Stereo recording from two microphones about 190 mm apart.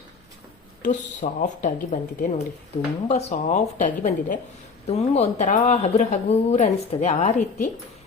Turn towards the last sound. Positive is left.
turn(degrees=35)  # may be behind; listen again after turning